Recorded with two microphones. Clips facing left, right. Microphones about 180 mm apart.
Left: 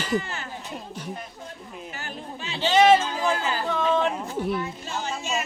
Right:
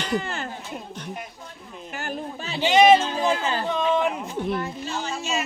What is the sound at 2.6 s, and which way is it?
Speech, 15° right (ahead or behind).